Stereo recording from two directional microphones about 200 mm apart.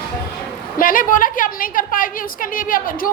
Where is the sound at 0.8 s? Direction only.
45° left (ahead or behind).